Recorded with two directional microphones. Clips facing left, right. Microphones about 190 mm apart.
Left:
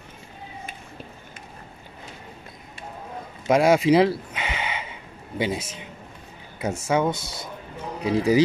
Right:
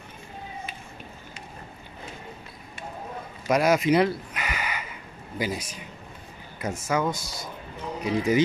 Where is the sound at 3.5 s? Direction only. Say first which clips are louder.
Left 4 dB; 25° left (ahead or behind).